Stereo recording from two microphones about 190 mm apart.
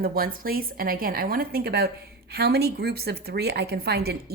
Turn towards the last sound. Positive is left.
turn(degrees=-55)  # may be behind; listen again after turning